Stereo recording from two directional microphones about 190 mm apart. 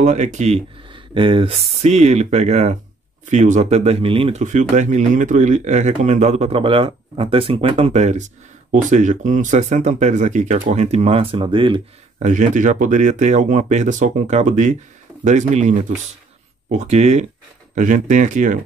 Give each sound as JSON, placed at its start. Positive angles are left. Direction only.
{"t": 0.0, "sound": "speech", "side_deg": -40}
{"t": 12.3, "sound": "speech", "side_deg": -40}